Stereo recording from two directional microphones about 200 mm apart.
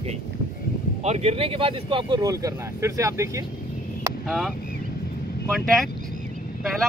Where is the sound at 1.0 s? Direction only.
30° right (ahead or behind); by 3.3 s 15° right (ahead or behind).